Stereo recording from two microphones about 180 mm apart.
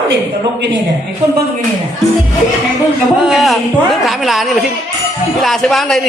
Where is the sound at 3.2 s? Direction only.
Centre (ahead or behind).